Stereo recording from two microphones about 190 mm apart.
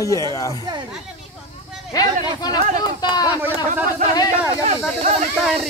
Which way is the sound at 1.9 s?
20° left (ahead or behind).